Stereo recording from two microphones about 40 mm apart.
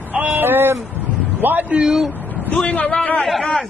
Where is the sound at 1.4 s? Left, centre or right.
Right.